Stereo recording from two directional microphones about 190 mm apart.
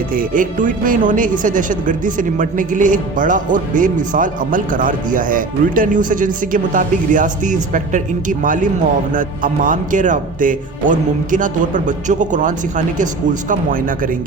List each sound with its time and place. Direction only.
0.1 s speech: 45° right (ahead or behind)